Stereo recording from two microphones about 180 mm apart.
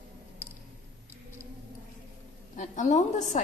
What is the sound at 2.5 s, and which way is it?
Speech, 45° left (ahead or behind).